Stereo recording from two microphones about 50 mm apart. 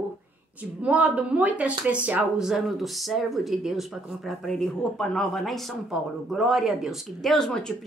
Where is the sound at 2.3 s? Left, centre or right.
Centre.